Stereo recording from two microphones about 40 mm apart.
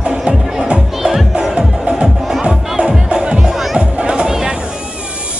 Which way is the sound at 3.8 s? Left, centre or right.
Right.